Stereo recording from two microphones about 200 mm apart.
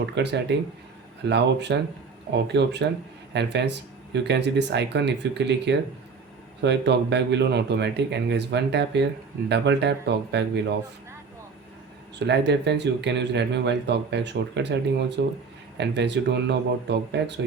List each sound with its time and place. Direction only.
0.0 s speech: 60° right (ahead or behind)
12.2 s speech: 60° right (ahead or behind)